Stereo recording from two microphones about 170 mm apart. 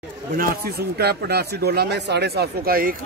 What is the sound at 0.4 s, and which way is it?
Speech, 65° right (ahead or behind).